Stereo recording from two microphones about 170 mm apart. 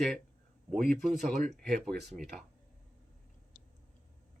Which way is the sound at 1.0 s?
Centre (ahead or behind).